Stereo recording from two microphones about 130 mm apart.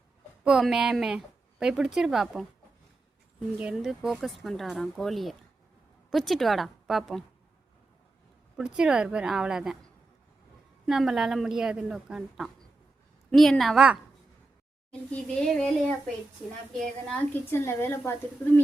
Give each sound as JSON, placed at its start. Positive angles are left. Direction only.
{"t": 0.4, "sound": "a woman's voice", "side_deg": -5}
{"t": 3.6, "sound": "a woman's voice", "side_deg": -5}
{"t": 8.5, "sound": "a woman's voice", "side_deg": -5}
{"t": 10.8, "sound": "a woman's voice", "side_deg": -5}
{"t": 14.8, "sound": "a woman's voice", "side_deg": 10}
{"t": 16.7, "sound": "a woman's voice", "side_deg": 10}